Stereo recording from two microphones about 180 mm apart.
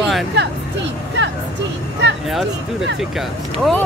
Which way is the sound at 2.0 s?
75° right (ahead or behind).